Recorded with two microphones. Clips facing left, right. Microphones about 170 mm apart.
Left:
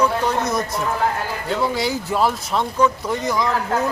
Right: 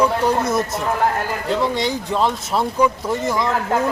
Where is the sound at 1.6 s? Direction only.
5° left (ahead or behind).